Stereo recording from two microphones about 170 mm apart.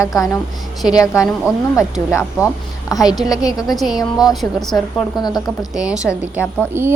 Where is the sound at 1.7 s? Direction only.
15° left (ahead or behind).